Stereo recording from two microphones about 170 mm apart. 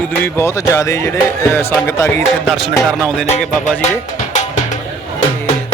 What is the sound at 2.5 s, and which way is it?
Speech, centre (ahead or behind).